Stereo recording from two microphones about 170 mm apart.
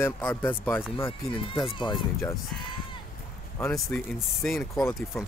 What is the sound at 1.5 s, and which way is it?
Speech, 30° left (ahead or behind).